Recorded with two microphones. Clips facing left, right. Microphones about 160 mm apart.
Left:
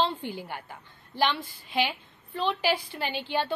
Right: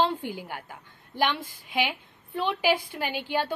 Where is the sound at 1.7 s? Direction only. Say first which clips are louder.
Even; 10° right (ahead or behind).